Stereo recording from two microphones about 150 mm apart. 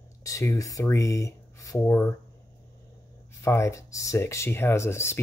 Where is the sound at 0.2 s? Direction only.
20° left (ahead or behind).